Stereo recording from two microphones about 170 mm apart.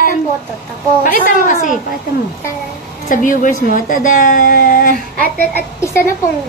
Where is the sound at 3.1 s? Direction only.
50° left (ahead or behind).